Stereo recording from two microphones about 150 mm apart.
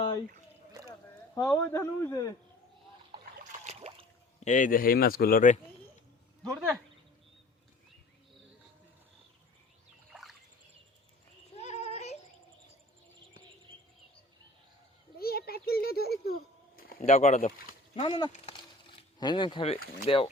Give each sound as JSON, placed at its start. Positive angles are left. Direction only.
{"t": 1.4, "sound": "a man's voice", "side_deg": 20}
{"t": 3.6, "sound": "a sound", "side_deg": -45}
{"t": 4.4, "sound": "speech", "side_deg": 55}
{"t": 6.4, "sound": "speech", "side_deg": 0}
{"t": 10.1, "sound": "rowboat", "side_deg": 0}
{"t": 11.5, "sound": "a sound", "side_deg": 50}
{"t": 15.2, "sound": "a child's voice", "side_deg": 90}
{"t": 16.7, "sound": "a sound", "side_deg": 80}
{"t": 17.0, "sound": "speech", "side_deg": 50}
{"t": 18.0, "sound": "speech", "side_deg": 30}